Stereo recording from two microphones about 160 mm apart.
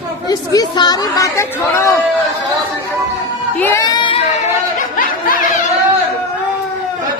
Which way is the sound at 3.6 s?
20° left (ahead or behind).